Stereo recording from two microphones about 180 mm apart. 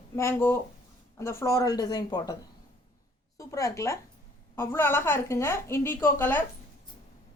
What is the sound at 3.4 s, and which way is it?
A woman's voice, 20° left (ahead or behind).